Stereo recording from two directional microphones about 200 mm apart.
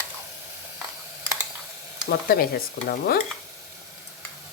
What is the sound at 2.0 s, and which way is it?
Stir, 50° left (ahead or behind).